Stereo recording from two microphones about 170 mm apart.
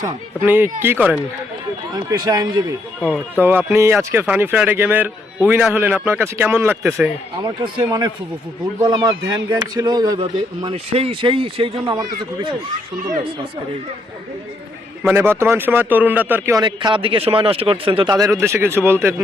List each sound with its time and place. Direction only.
0.0 s speech: 10° right (ahead or behind)
1.9 s speech: 25° right (ahead or behind)
3.0 s speech: 10° left (ahead or behind)
3.4 s speech: 10° right (ahead or behind)
7.4 s speech: 30° right (ahead or behind)
15.0 s speech: 10° right (ahead or behind)
16.6 s speech: 25° right (ahead or behind)